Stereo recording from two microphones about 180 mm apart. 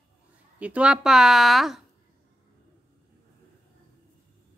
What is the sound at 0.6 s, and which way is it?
A woman's voice, 5° right (ahead or behind).